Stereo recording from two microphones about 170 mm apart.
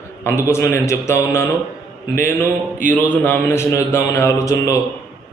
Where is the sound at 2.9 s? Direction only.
10° left (ahead or behind).